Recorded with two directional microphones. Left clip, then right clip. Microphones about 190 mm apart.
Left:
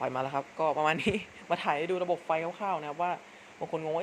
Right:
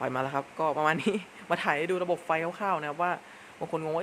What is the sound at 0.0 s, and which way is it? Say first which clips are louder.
Speech: right 1 dB; 15° right (ahead or behind).